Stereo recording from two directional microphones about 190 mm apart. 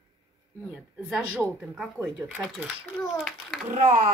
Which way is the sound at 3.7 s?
45° right (ahead or behind).